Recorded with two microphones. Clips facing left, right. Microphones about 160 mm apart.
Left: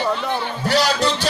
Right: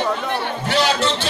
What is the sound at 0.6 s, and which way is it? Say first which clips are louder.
Music: left 1 dB; 40° left (ahead or behind).